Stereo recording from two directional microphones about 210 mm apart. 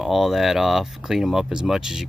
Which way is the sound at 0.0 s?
Centre (ahead or behind).